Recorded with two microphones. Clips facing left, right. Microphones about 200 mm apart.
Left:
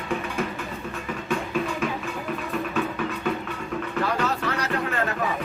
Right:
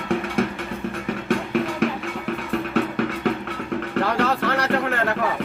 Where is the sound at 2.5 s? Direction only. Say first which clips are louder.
Right 5 dB; 65° right (ahead or behind).